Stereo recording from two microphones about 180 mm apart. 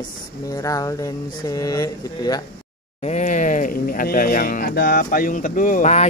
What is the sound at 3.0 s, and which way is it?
Speech, 40° left (ahead or behind).